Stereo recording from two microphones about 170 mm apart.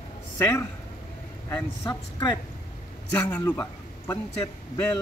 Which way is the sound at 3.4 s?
20° left (ahead or behind).